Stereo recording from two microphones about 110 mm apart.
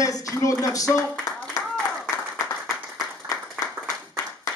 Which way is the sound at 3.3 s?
30° left (ahead or behind).